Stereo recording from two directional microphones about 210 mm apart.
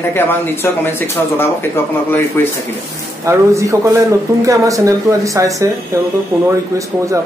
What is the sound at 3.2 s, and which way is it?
Speech, 15° right (ahead or behind).